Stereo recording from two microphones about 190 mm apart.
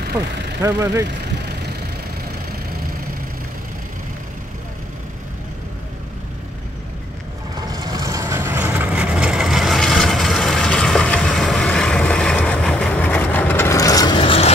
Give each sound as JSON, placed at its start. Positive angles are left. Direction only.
{"t": 0.6, "sound": "speech", "side_deg": -15}
{"t": 7.5, "sound": "vehicle", "side_deg": -20}